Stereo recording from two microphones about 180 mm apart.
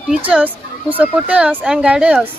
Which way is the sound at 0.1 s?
10° right (ahead or behind).